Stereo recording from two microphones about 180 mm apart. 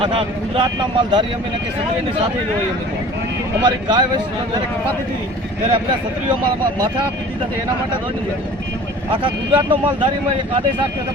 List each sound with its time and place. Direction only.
0.0 s speech: 30° right (ahead or behind)
3.6 s speech: 25° right (ahead or behind)
9.2 s speech: 25° right (ahead or behind)